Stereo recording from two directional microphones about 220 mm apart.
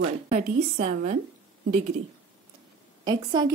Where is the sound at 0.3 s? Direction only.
35° right (ahead or behind).